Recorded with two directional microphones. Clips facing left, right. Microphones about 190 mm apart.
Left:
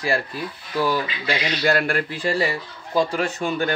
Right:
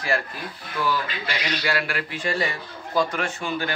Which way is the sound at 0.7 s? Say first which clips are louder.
Left 4 dB; 40° left (ahead or behind).